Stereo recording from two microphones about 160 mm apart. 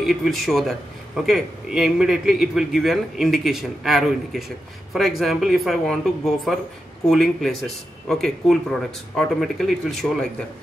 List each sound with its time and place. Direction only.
0.0 s a man's voice: centre (ahead or behind)